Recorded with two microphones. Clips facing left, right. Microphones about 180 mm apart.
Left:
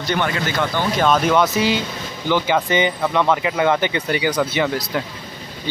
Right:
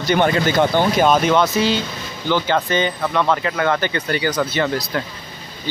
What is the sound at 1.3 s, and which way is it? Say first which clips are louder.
Speech: even; 10° left (ahead or behind).